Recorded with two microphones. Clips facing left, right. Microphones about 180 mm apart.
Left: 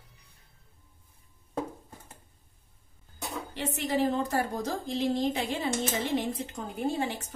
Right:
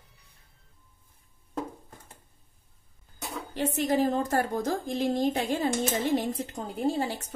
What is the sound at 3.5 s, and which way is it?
A woman's voice, 45° right (ahead or behind).